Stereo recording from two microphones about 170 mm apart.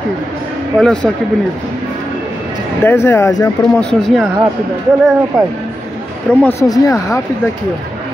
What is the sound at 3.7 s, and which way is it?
Speech, 5° left (ahead or behind).